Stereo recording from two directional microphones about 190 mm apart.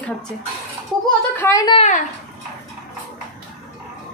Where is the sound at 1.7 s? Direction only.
40° left (ahead or behind).